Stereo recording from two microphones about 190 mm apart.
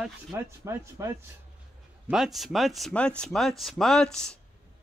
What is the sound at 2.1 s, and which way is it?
Speech, centre (ahead or behind).